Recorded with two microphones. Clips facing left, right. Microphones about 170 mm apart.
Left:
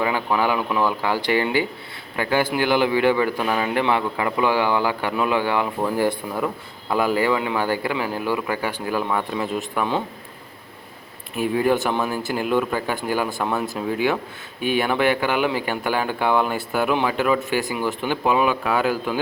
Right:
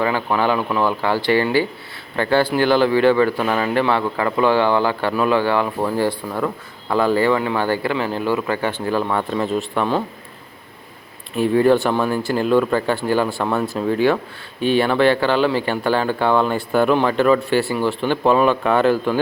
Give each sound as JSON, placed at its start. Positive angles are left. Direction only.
{"t": 0.3, "sound": "a man's voice", "side_deg": 15}
{"t": 0.7, "sound": "speech", "side_deg": -15}
{"t": 1.0, "sound": "a man's voice", "side_deg": 15}
{"t": 8.1, "sound": "a man's voice", "side_deg": -20}
{"t": 8.4, "sound": "a man's voice", "side_deg": 10}
{"t": 11.3, "sound": "a man's voice", "side_deg": 10}